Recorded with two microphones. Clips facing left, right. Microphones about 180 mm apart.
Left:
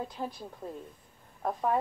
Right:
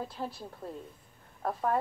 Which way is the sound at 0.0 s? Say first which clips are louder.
Left 1 dB; centre (ahead or behind).